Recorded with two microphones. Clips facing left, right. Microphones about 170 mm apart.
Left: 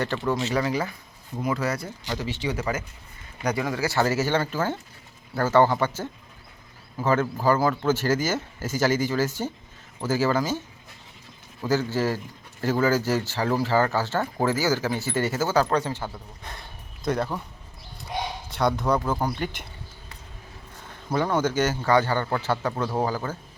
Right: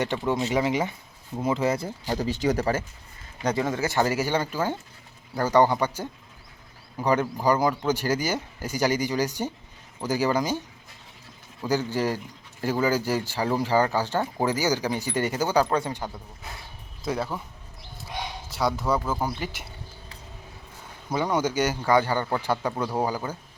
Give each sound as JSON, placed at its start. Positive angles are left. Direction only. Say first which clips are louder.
{"t": 0.0, "sound": "speech", "louder": "even", "side_deg": -20}
{"t": 3.4, "sound": "speech", "louder": "right 1 dB", "side_deg": -25}
{"t": 11.7, "sound": "speech", "louder": "left 1 dB", "side_deg": -15}
{"t": 18.5, "sound": "speech", "louder": "left 2 dB", "side_deg": -5}
{"t": 21.1, "sound": "speech", "louder": "left 1 dB", "side_deg": -10}